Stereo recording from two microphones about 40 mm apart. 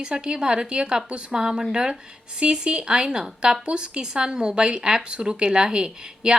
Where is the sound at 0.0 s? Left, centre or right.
Right.